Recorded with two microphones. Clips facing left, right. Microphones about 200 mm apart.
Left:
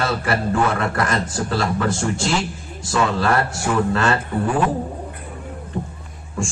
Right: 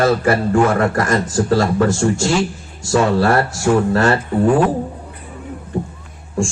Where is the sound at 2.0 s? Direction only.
30° right (ahead or behind).